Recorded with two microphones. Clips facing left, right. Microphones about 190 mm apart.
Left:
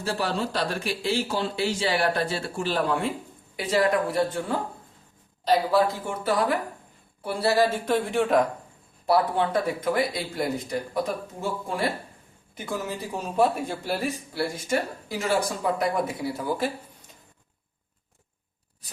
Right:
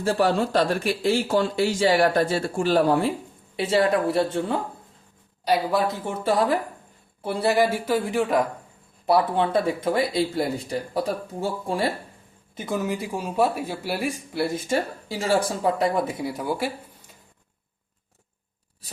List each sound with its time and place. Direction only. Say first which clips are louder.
0.2 s a man's voice: right 8 dB; 50° right (ahead or behind)
3.5 s speech: right 2 dB; 25° right (ahead or behind)
5.5 s speech: left 1 dB; 20° right (ahead or behind)
7.9 s speech: even; centre (ahead or behind)
9.0 s speech: right 2 dB; 20° right (ahead or behind)
12.5 s speech: right 4 dB; 20° right (ahead or behind)
14.3 s speech: right 3 dB; 25° right (ahead or behind)
15.8 s speech: right 2 dB; 20° right (ahead or behind)